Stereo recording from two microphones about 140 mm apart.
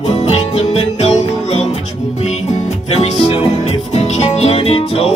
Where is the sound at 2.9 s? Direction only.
45° left (ahead or behind).